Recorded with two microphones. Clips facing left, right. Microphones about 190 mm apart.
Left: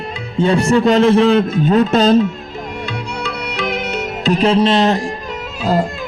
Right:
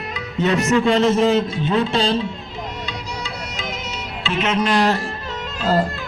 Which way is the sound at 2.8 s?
65° left (ahead or behind).